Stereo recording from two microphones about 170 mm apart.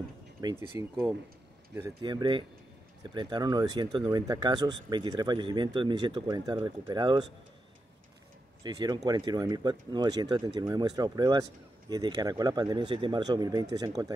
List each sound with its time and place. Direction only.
0.4 s speech: 25° right (ahead or behind)
2.0 s speech: 25° right (ahead or behind)
8.6 s speech: 25° right (ahead or behind)